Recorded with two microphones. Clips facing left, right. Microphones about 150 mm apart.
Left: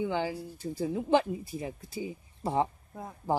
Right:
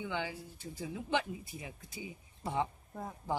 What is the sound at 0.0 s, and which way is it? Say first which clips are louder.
Speech: left 8 dB; 40° left (ahead or behind).